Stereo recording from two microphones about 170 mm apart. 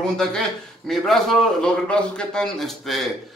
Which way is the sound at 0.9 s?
Centre (ahead or behind).